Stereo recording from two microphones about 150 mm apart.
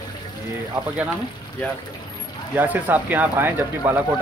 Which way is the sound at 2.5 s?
10° right (ahead or behind).